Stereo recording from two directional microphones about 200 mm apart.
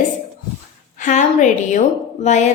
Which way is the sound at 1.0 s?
40° left (ahead or behind).